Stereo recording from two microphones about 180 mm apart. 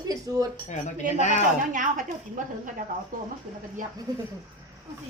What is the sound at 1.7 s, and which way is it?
Speech, 45° right (ahead or behind).